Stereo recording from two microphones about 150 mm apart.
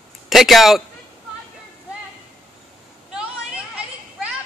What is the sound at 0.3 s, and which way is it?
Speech, centre (ahead or behind).